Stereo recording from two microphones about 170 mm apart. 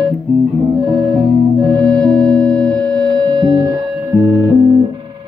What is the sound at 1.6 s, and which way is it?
Music, 25° right (ahead or behind).